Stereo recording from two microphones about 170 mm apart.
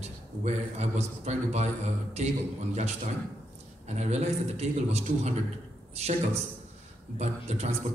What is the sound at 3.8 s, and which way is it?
A man's voice, 40° right (ahead or behind).